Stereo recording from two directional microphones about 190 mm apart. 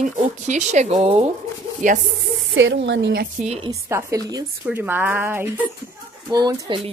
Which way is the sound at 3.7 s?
15° right (ahead or behind).